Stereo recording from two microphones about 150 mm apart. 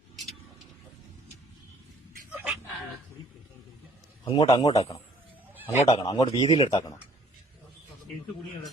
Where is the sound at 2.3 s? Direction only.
5° right (ahead or behind).